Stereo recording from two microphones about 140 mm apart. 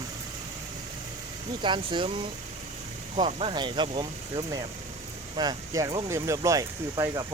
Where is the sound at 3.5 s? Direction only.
30° right (ahead or behind).